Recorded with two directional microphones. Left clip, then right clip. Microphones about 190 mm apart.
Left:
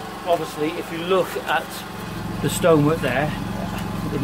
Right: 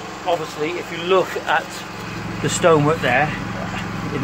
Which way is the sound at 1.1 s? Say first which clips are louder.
Right 3 dB; 20° right (ahead or behind).